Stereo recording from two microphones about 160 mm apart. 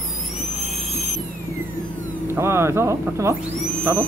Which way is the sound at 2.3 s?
15° right (ahead or behind).